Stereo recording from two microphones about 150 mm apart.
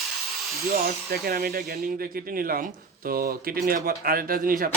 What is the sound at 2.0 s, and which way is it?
Speech, 75° right (ahead or behind).